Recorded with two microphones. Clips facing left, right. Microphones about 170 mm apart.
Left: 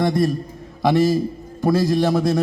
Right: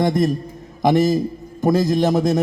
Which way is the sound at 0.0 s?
20° right (ahead or behind).